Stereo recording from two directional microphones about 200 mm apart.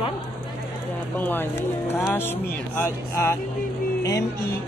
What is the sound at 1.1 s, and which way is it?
A woman's voice, 10° left (ahead or behind).